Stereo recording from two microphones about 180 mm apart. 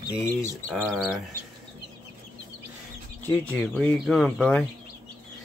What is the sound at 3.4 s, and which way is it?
Speech, 5° left (ahead or behind).